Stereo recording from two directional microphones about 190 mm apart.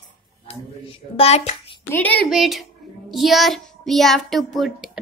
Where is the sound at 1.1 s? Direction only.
35° left (ahead or behind).